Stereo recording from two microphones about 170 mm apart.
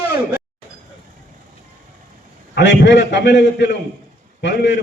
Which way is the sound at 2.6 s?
90° left.